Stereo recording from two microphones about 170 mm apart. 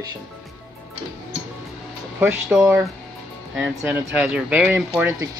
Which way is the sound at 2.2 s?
15° right (ahead or behind).